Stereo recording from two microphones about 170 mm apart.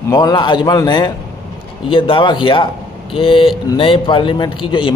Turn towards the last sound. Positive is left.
turn(degrees=30)  # may be behind; listen again after turning